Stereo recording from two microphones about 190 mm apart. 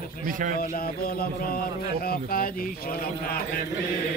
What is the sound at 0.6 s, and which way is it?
Mantra, 50° left (ahead or behind).